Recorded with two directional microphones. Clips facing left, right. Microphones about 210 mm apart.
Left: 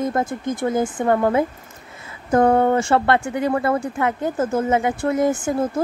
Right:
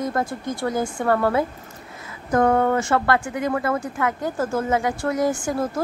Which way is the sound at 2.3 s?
30° left (ahead or behind).